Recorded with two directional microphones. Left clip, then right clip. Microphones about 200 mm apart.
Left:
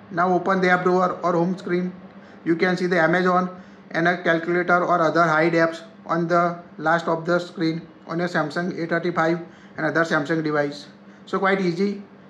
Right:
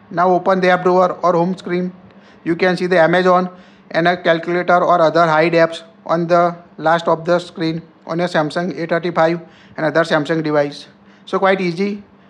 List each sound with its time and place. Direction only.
0.1 s a man's voice: 40° right (ahead or behind)